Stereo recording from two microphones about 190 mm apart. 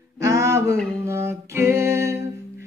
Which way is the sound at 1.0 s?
15° right (ahead or behind).